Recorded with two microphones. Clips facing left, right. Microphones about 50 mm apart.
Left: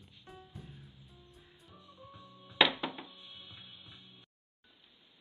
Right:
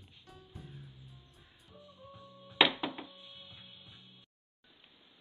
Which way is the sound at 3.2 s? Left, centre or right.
Left.